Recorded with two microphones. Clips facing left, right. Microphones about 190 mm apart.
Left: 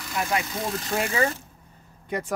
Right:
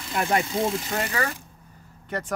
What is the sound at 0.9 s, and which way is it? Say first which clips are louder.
Speech: left 3 dB; 15° left (ahead or behind).